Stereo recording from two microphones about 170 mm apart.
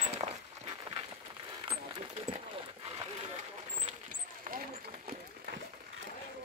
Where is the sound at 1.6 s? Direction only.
25° right (ahead or behind).